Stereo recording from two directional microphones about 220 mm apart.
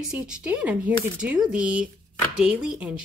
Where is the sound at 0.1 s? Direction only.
5° right (ahead or behind).